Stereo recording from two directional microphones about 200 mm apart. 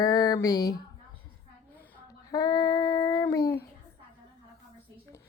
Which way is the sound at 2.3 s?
20° left (ahead or behind).